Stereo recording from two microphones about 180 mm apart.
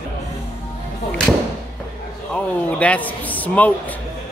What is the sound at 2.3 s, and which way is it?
A man's voice, 5° left (ahead or behind).